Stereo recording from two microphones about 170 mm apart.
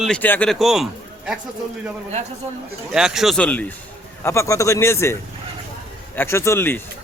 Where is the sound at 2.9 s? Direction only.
5° right (ahead or behind); by 5.1 s 15° left (ahead or behind).